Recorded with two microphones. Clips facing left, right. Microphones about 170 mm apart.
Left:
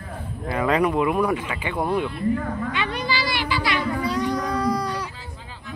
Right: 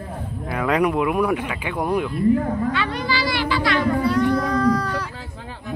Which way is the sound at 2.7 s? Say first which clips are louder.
Right 2 dB; 20° left (ahead or behind).